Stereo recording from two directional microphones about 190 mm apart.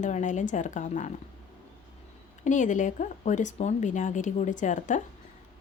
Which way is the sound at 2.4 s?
40° left (ahead or behind).